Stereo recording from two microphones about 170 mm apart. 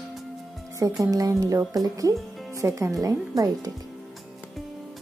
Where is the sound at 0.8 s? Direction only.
20° right (ahead or behind).